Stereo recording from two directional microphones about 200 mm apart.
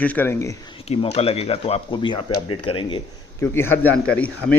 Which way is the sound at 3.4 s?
10° left (ahead or behind).